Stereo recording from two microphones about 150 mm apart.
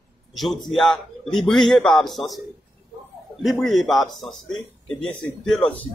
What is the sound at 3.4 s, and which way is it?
A man's voice, centre (ahead or behind).